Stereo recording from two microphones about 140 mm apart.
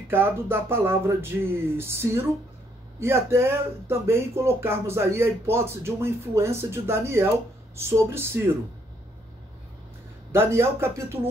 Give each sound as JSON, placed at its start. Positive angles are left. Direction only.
{"t": 0.1, "sound": "speech", "side_deg": -15}
{"t": 10.3, "sound": "speech", "side_deg": -15}